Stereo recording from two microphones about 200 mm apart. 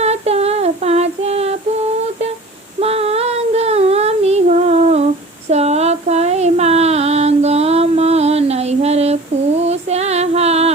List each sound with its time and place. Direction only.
0.0 s female singing: 30° right (ahead or behind)
2.8 s a sound: 30° right (ahead or behind)
9.6 s female singing: 35° right (ahead or behind)